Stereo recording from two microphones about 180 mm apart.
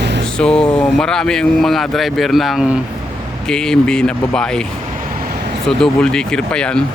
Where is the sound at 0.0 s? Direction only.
75° right (ahead or behind).